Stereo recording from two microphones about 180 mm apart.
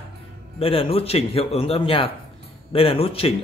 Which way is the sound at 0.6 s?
30° left (ahead or behind).